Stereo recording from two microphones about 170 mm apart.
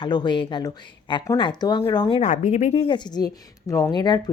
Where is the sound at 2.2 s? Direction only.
45° left (ahead or behind).